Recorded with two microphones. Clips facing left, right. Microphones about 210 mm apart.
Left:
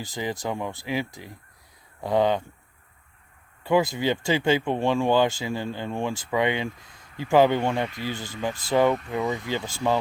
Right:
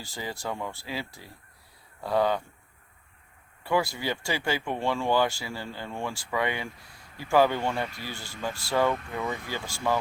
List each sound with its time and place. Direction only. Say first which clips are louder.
0.0 s speech: left 6 dB; 20° left (ahead or behind)
3.6 s speech: left 5 dB; 20° left (ahead or behind)